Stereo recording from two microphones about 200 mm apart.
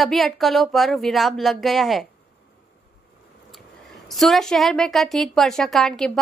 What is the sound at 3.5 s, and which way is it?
A woman's voice, centre (ahead or behind).